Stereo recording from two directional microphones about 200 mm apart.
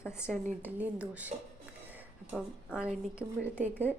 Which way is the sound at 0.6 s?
10° right (ahead or behind).